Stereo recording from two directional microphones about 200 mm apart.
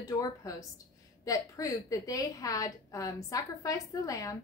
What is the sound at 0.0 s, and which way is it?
A woman's voice, 15° left (ahead or behind).